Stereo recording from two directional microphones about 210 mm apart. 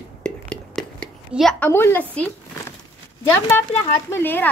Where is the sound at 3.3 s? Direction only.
10° left (ahead or behind).